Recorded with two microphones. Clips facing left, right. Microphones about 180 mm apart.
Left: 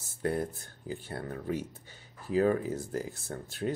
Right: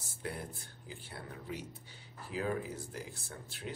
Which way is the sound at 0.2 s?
45° left (ahead or behind).